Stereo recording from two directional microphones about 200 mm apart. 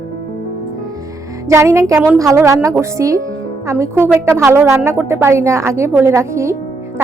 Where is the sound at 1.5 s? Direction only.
15° right (ahead or behind).